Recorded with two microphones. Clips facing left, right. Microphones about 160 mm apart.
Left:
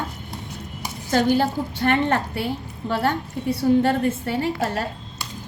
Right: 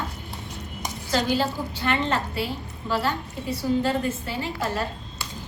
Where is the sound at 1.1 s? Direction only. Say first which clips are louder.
Left 5 dB; 50° left (ahead or behind).